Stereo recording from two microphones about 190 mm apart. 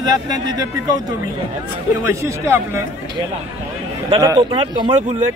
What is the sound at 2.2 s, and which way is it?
Speech, 15° right (ahead or behind).